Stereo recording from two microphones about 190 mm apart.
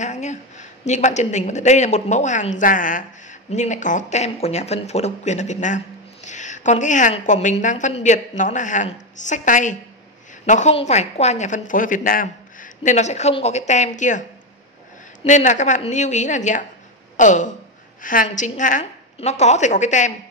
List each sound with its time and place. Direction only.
0.0 s a woman's voice: 40° left (ahead or behind)
15.2 s a woman's voice: 40° left (ahead or behind)